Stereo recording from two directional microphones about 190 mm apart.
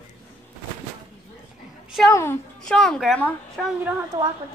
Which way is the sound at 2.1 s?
10° left (ahead or behind).